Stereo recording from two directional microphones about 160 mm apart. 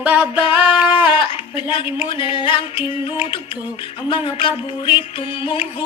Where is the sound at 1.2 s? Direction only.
30° left (ahead or behind).